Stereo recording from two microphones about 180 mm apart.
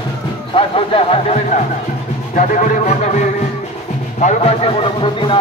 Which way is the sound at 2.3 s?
45° left (ahead or behind).